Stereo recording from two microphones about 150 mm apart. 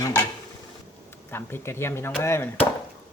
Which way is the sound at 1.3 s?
15° left (ahead or behind).